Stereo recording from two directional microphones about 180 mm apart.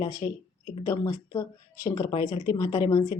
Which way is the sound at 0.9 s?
20° left (ahead or behind).